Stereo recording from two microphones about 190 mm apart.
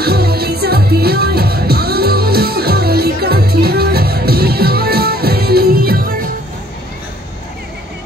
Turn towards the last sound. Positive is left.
turn(degrees=-50)  # may be behind; listen again after turning